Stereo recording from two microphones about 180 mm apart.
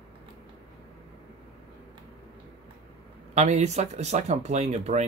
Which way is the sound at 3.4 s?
40° right (ahead or behind).